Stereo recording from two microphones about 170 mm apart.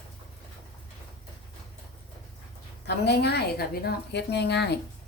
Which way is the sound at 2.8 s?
80° left.